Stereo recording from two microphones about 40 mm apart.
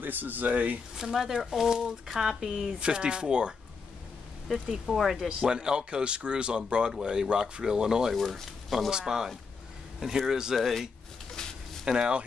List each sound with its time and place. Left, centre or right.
0.0 s speech: right
0.9 s speech: centre
2.8 s speech: right
4.8 s speech: centre
5.4 s speech: right
8.1 s speech: centre
8.9 s speech: centre
11.3 s a sound: centre
11.8 s speech: centre